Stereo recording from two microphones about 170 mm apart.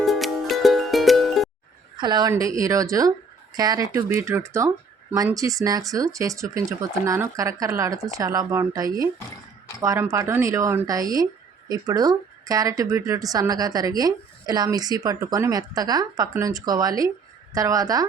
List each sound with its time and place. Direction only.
0.0 s music: centre (ahead or behind)
2.0 s speech: 25° right (ahead or behind)